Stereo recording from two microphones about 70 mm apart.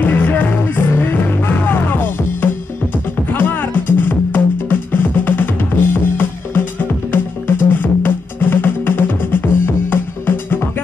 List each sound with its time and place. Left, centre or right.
0.0 s music: left